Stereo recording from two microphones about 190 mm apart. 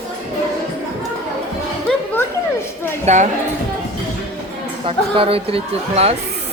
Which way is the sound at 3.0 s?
40° right (ahead or behind).